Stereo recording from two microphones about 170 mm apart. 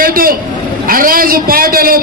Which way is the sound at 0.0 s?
60° right (ahead or behind).